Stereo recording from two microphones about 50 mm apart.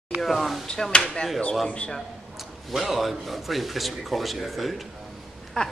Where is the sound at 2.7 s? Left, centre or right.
Centre.